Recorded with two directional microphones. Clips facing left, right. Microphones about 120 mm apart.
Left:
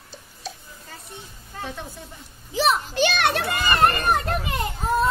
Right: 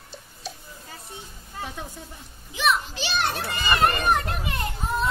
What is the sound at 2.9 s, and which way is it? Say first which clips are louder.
Speech: left 6 dB; 55° left (ahead or behind).